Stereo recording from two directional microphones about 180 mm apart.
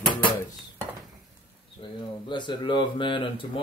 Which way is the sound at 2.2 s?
25° left (ahead or behind).